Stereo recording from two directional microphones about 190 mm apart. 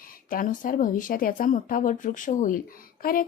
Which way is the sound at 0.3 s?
45° left (ahead or behind).